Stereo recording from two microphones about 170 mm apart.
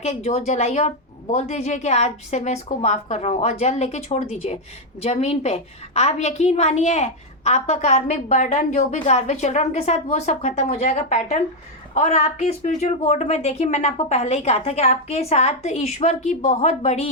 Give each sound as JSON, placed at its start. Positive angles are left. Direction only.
{"t": 0.0, "sound": "a woman's voice", "side_deg": 40}